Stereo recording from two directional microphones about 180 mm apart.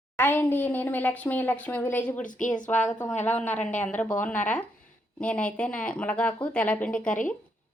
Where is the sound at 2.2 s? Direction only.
45° left (ahead or behind).